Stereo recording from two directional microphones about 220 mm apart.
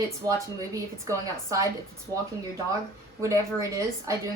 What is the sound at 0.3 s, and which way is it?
A woman's voice, 15° right (ahead or behind).